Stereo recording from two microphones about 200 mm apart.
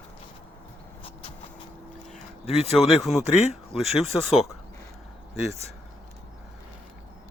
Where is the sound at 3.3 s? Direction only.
35° left (ahead or behind).